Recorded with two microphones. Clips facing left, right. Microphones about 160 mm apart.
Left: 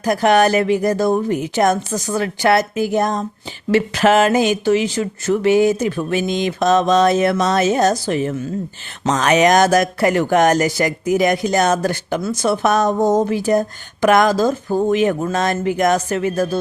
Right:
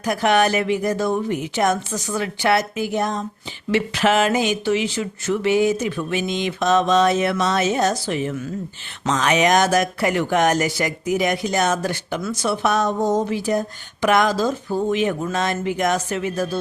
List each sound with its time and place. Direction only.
0.0 s speech: 40° left (ahead or behind)